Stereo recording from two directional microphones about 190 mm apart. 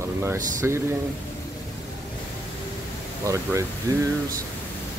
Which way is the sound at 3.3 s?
15° right (ahead or behind).